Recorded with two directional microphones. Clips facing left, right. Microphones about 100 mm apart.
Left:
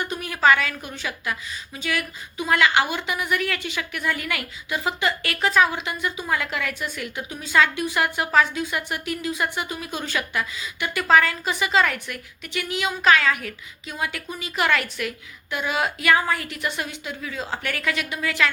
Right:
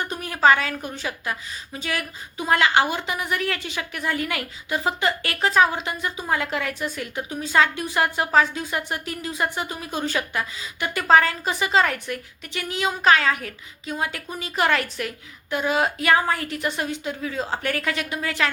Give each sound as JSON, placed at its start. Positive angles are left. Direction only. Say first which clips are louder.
{"t": 0.0, "sound": "a woman's voice", "louder": "right 1 dB", "side_deg": -35}